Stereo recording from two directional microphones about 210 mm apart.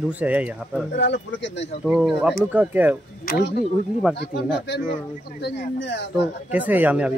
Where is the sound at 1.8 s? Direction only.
Centre (ahead or behind).